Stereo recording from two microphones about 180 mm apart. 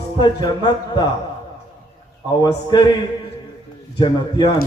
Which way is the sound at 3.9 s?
25° left (ahead or behind).